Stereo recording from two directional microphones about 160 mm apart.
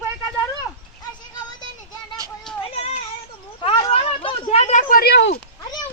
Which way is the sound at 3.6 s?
35° left (ahead or behind).